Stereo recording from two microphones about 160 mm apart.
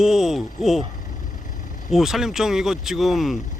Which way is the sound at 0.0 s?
Centre (ahead or behind).